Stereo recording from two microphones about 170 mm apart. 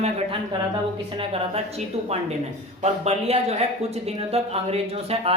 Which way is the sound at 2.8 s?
40° right (ahead or behind).